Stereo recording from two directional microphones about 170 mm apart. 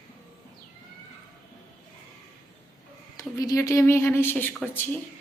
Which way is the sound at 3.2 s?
20° left (ahead or behind).